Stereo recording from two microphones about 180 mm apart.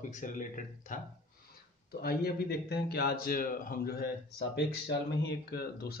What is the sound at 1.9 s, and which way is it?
Speech, 60° left (ahead or behind).